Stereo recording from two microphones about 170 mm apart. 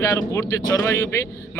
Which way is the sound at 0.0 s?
20° left (ahead or behind).